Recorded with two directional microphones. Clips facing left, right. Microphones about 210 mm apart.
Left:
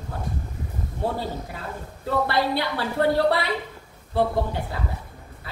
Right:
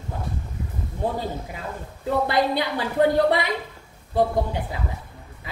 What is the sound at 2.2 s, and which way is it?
Speech, 15° right (ahead or behind).